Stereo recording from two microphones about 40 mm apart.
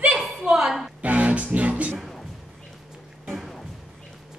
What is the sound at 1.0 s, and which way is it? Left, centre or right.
Music, right.